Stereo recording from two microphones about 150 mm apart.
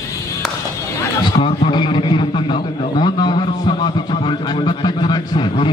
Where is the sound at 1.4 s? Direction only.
35° left (ahead or behind).